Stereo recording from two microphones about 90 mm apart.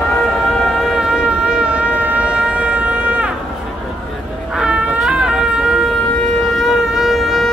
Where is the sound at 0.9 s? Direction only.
10° right (ahead or behind).